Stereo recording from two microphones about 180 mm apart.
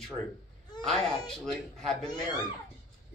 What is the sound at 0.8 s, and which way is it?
Speech, 5° left (ahead or behind).